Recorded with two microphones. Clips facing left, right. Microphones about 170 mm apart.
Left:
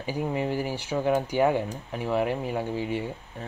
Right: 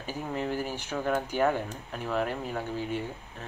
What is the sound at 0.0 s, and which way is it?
Speech, 10° left (ahead or behind).